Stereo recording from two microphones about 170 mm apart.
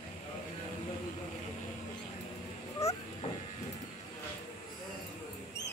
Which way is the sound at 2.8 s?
15° left (ahead or behind).